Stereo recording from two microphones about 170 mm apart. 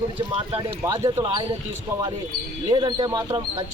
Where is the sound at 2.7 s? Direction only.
25° right (ahead or behind).